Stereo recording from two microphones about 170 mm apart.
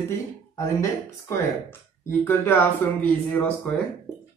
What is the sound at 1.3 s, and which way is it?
A man's voice, 15° left (ahead or behind).